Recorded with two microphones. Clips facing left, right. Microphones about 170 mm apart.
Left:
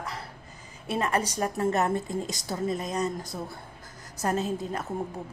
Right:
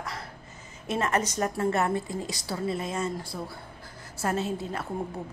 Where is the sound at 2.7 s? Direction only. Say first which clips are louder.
Left 1 dB; 40° left (ahead or behind).